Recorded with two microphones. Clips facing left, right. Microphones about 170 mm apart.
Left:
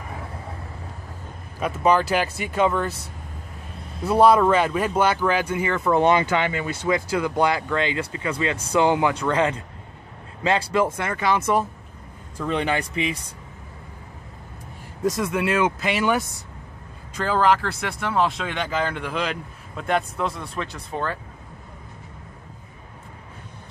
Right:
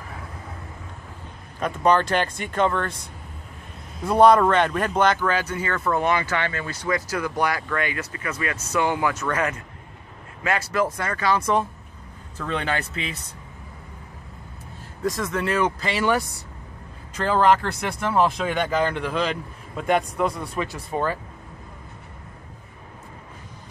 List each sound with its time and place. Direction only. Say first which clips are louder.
1.6 s speech: even; 5° left (ahead or behind)
4.0 s speech: right 1 dB; 5° left (ahead or behind)
15.1 s speech: left 1 dB; 10° left (ahead or behind)
17.2 s speech: right 1 dB; 5° left (ahead or behind)